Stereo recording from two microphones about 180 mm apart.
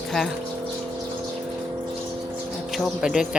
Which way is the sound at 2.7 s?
Centre (ahead or behind).